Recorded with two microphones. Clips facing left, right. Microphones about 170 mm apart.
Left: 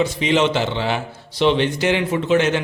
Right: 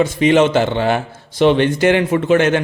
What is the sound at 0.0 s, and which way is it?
A man's voice, 50° right (ahead or behind).